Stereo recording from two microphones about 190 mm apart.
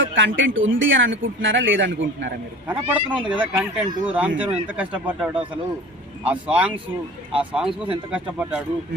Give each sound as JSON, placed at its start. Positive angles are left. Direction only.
{"t": 0.1, "sound": "speech", "side_deg": -80}
{"t": 2.6, "sound": "speech", "side_deg": -10}